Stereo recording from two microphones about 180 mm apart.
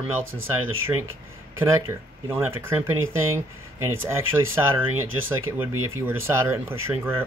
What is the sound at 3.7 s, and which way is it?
Speech, 15° right (ahead or behind).